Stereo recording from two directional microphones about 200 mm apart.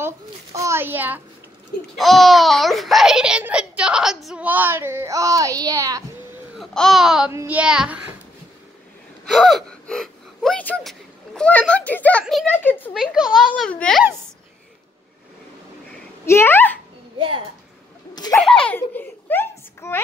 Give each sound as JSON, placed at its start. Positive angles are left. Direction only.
{"t": 0.0, "sound": "a child's voice", "side_deg": -15}
{"t": 6.6, "sound": "a child's voice", "side_deg": 0}
{"t": 9.2, "sound": "speech", "side_deg": 0}
{"t": 12.9, "sound": "a child's voice", "side_deg": -5}
{"t": 16.3, "sound": "a child's voice", "side_deg": 10}
{"t": 18.1, "sound": "a sound", "side_deg": 20}
{"t": 18.4, "sound": "baby laughter", "side_deg": 5}